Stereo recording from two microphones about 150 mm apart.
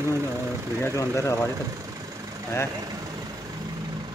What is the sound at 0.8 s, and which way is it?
Speech, 20° left (ahead or behind).